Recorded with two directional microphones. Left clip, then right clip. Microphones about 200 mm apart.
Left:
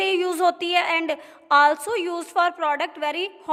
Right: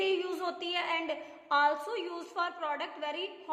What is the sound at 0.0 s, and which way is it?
A woman's voice, 50° left (ahead or behind).